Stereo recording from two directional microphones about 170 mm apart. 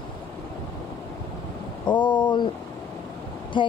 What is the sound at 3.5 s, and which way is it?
Speech, 30° left (ahead or behind).